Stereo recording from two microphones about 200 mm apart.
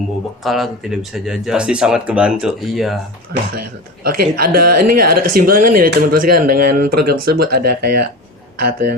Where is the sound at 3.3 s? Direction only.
50° right (ahead or behind).